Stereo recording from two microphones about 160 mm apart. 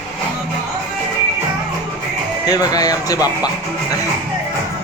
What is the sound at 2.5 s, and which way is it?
Speech, 25° left (ahead or behind).